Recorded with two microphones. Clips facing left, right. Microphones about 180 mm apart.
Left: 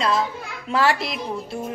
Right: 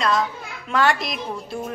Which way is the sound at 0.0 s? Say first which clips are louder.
Even; 30° left (ahead or behind).